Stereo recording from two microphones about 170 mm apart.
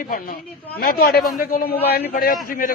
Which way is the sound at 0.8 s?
65° left (ahead or behind).